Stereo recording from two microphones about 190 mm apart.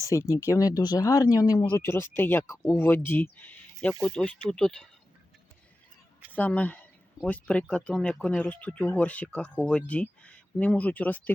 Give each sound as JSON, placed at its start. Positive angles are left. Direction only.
{"t": 0.0, "sound": "speech", "side_deg": 15}
{"t": 3.3, "sound": "a sound", "side_deg": 5}
{"t": 4.0, "sound": "speech", "side_deg": 5}
{"t": 6.3, "sound": "speech", "side_deg": 10}